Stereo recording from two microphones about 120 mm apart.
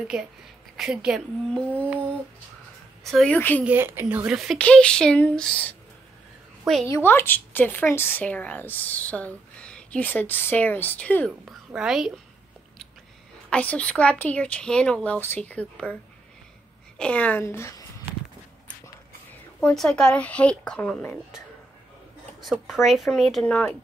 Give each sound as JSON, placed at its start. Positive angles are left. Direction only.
{"t": 0.1, "sound": "a woman's voice", "side_deg": -5}
{"t": 3.0, "sound": "a sound", "side_deg": 0}
{"t": 3.3, "sound": "speech", "side_deg": 15}
{"t": 3.6, "sound": "a woman's voice", "side_deg": -20}
{"t": 4.3, "sound": "a woman's voice", "side_deg": -5}
{"t": 4.6, "sound": "speech", "side_deg": 10}
{"t": 6.9, "sound": "speech", "side_deg": 20}
{"t": 11.4, "sound": "a woman's voice", "side_deg": -5}
{"t": 13.5, "sound": "speech", "side_deg": 10}
{"t": 17.0, "sound": "a woman's voice", "side_deg": 10}
{"t": 19.6, "sound": "speech", "side_deg": 5}
{"t": 22.4, "sound": "a woman's voice", "side_deg": 0}
{"t": 23.5, "sound": "speech", "side_deg": 10}